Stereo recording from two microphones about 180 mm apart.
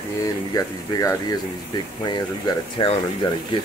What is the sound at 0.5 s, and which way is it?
Speech, 20° left (ahead or behind).